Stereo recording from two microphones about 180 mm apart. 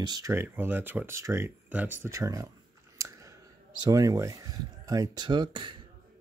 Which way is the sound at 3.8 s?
20° right (ahead or behind).